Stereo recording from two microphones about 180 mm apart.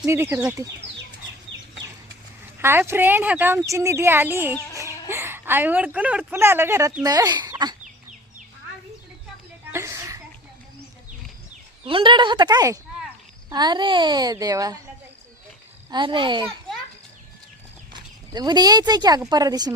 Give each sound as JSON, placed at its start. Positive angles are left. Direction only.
{"t": 0.0, "sound": "speech", "side_deg": -15}
{"t": 1.5, "sound": "chicken", "side_deg": -90}
{"t": 2.6, "sound": "speech", "side_deg": -15}
{"t": 9.7, "sound": "a sound", "side_deg": -15}
{"t": 11.9, "sound": "a child's voice", "side_deg": -30}
{"t": 15.9, "sound": "a child's voice", "side_deg": -25}
{"t": 17.9, "sound": "speech", "side_deg": -25}